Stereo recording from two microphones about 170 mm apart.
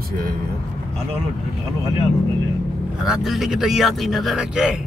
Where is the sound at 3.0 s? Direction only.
Centre (ahead or behind).